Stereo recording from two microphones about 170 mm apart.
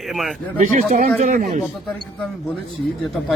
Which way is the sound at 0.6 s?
45° right (ahead or behind).